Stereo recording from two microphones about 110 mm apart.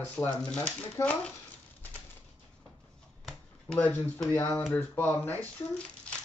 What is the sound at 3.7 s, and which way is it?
Speech, 15° left (ahead or behind).